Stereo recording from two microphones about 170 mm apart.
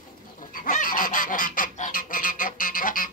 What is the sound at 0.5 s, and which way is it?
Goose, 50° left (ahead or behind).